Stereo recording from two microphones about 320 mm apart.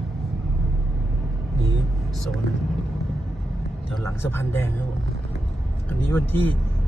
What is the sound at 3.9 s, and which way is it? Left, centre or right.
Speech, centre.